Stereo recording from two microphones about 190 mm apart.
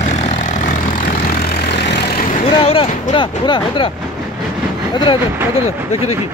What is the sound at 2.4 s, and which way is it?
Vehicle, 30° left (ahead or behind).